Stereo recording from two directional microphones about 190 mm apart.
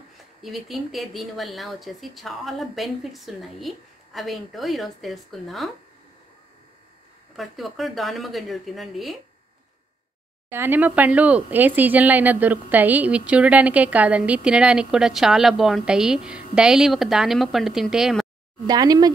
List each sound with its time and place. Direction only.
0.4 s speech: centre (ahead or behind)
7.3 s speech: centre (ahead or behind)
10.5 s speech: 10° right (ahead or behind)
18.7 s speech: 20° right (ahead or behind)